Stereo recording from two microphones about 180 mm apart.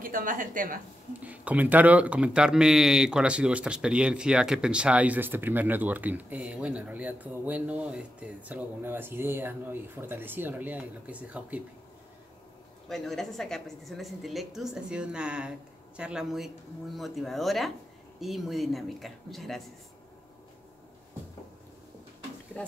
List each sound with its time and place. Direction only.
0.0 s speech: 50° right (ahead or behind)
1.2 s speech: 10° right (ahead or behind)
12.8 s a woman's voice: centre (ahead or behind)
22.5 s speech: 5° left (ahead or behind)